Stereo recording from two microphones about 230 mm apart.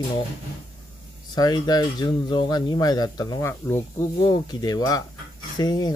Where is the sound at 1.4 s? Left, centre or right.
Centre.